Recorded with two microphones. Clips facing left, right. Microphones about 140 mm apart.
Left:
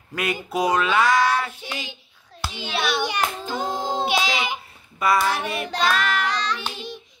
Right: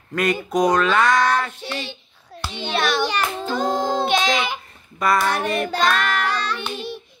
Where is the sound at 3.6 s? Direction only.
55° right (ahead or behind).